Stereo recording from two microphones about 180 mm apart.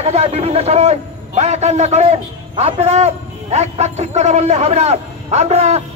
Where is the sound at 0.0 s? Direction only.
35° right (ahead or behind).